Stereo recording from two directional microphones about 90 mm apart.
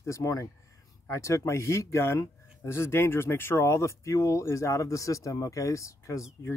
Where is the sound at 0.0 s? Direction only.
35° left (ahead or behind).